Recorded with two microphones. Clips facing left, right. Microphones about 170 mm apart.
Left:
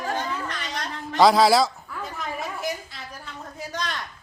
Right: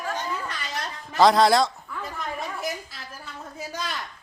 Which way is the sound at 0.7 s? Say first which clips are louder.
Left 2 dB; centre (ahead or behind).